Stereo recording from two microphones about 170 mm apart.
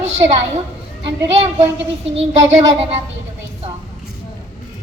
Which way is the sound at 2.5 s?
45° right (ahead or behind).